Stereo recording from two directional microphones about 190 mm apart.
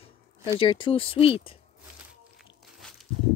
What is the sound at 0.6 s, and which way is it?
Speech, 25° left (ahead or behind).